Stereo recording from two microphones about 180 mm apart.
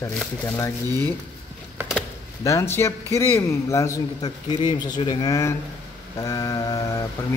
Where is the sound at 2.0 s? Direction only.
15° left (ahead or behind).